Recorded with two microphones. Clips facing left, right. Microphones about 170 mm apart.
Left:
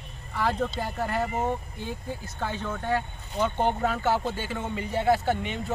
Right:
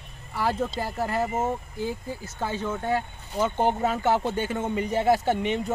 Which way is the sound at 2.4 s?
10° right (ahead or behind).